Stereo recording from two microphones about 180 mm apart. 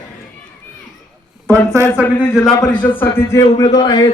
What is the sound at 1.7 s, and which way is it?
Speech, 15° right (ahead or behind).